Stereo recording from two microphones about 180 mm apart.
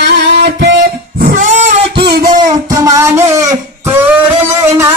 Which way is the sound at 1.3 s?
45° right (ahead or behind).